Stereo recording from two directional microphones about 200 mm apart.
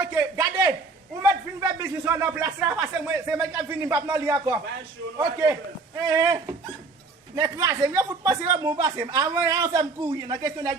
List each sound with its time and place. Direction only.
0.0 s speech: 15° right (ahead or behind)